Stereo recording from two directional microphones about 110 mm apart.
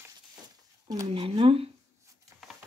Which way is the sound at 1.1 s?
60° right (ahead or behind).